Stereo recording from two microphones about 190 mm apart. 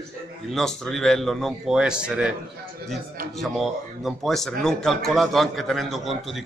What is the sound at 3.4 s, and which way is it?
Speech, centre (ahead or behind).